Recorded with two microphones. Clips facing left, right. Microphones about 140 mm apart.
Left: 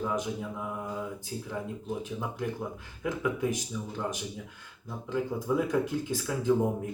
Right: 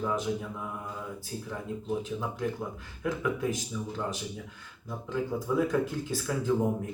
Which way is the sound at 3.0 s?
15° left (ahead or behind).